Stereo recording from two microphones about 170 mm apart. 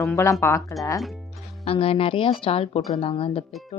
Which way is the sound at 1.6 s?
35° left (ahead or behind).